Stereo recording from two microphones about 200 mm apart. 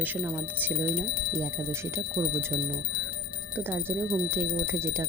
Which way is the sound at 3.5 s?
10° right (ahead or behind).